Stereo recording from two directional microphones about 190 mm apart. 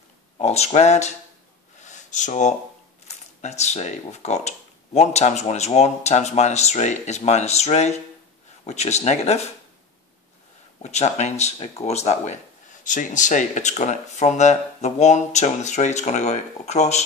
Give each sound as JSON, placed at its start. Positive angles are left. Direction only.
{"t": 0.4, "sound": "speech", "side_deg": 35}
{"t": 1.9, "sound": "a sound", "side_deg": 40}
{"t": 3.3, "sound": "speech", "side_deg": 35}
{"t": 10.8, "sound": "speech", "side_deg": 35}